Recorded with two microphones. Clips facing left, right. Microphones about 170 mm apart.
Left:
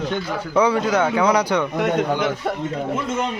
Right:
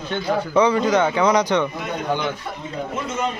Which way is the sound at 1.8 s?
75° left (ahead or behind).